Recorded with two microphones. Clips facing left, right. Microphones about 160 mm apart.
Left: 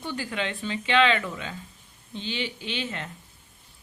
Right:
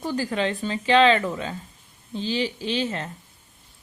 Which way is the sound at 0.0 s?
40° right (ahead or behind).